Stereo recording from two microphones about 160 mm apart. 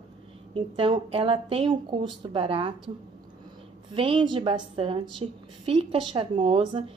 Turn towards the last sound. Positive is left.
turn(degrees=-30)  # may be behind; listen again after turning